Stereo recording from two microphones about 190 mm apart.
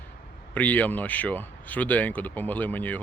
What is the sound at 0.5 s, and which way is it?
Speech, 10° left (ahead or behind).